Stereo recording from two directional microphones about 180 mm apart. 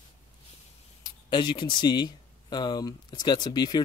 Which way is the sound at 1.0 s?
25° left (ahead or behind).